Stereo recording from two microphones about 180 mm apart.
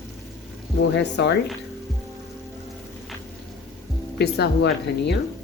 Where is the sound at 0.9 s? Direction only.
70° left (ahead or behind).